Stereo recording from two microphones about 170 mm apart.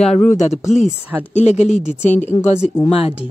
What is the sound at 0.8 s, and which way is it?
Speech, 10° right (ahead or behind).